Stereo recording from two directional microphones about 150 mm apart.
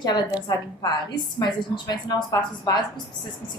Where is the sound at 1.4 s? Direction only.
30° left (ahead or behind).